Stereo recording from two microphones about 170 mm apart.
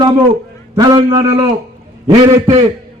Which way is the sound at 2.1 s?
35° right (ahead or behind).